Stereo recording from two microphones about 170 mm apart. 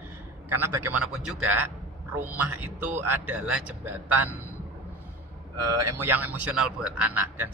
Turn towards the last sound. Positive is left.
turn(degrees=-10)  # may be behind; listen again after turning